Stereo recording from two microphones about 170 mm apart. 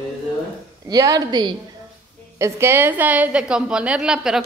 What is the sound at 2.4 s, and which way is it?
A woman's voice, 15° right (ahead or behind).